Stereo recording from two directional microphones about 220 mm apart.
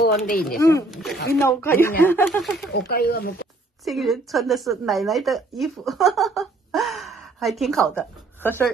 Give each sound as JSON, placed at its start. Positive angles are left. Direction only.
{"t": 0.3, "sound": "speech", "side_deg": 40}
{"t": 0.6, "sound": "speech", "side_deg": 15}
{"t": 0.8, "sound": "speech", "side_deg": 0}
{"t": 1.1, "sound": "speech", "side_deg": 45}
{"t": 1.6, "sound": "speech", "side_deg": 10}
{"t": 2.7, "sound": "speech", "side_deg": 45}
{"t": 3.8, "sound": "speech", "side_deg": 0}